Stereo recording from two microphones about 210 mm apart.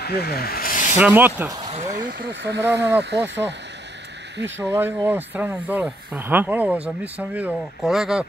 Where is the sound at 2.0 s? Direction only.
55° right (ahead or behind).